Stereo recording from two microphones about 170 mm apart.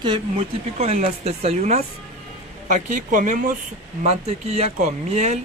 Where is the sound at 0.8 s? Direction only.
40° right (ahead or behind).